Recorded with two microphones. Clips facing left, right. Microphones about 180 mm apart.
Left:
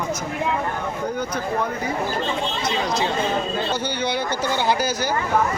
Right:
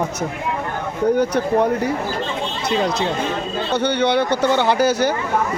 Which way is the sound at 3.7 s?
65° right (ahead or behind).